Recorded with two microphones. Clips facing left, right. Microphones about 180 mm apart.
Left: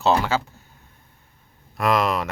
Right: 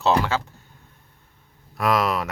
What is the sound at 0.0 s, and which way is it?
Speech, 5° left (ahead or behind).